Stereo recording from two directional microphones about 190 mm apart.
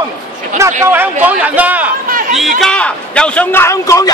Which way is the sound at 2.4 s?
Centre (ahead or behind).